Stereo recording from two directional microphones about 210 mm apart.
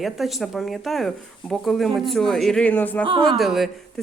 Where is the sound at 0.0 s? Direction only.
Centre (ahead or behind).